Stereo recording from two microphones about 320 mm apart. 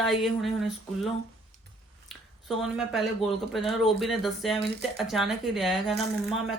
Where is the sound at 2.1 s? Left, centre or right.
Centre.